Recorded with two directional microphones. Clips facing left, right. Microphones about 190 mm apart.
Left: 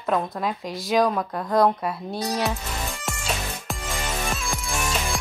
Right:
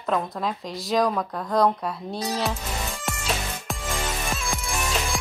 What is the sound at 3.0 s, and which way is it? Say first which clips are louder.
Music: right 1 dB; centre (ahead or behind).